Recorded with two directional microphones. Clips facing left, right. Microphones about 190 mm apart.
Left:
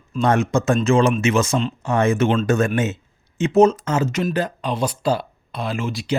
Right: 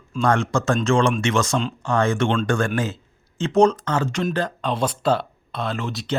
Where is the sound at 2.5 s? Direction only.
20° left (ahead or behind).